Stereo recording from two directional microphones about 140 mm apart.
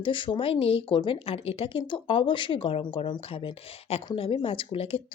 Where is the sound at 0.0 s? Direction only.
35° left (ahead or behind).